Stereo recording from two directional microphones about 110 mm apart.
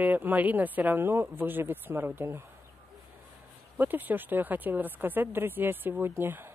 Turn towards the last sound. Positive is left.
turn(degrees=-20)  # may be behind; listen again after turning